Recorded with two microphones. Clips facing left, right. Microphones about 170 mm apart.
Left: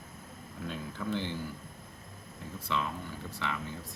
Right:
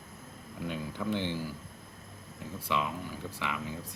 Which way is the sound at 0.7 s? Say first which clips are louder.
Right 2 dB; 15° right (ahead or behind).